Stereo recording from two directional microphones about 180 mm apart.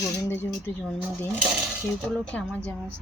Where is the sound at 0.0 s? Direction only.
15° left (ahead or behind).